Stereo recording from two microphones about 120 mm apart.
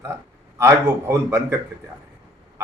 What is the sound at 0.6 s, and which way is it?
Speech, 20° right (ahead or behind).